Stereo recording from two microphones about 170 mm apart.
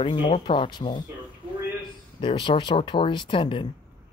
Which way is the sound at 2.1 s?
30° left (ahead or behind).